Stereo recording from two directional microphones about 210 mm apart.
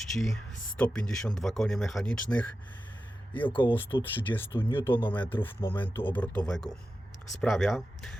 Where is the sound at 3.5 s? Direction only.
25° left (ahead or behind).